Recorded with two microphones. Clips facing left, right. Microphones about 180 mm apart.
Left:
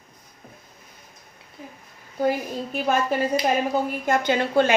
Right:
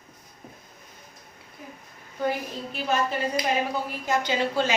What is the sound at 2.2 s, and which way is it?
Speech, 45° left (ahead or behind).